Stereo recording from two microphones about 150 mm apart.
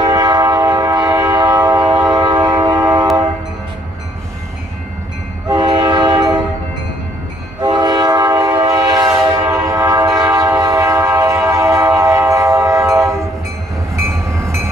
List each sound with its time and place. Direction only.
0.0 s train: 25° right (ahead or behind)
5.5 s train: 30° right (ahead or behind)
7.6 s train: 30° right (ahead or behind)